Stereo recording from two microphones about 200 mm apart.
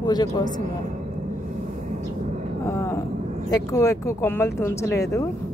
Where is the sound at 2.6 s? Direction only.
15° left (ahead or behind).